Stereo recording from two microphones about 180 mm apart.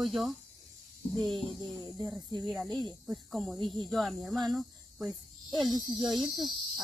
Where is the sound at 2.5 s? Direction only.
Centre (ahead or behind).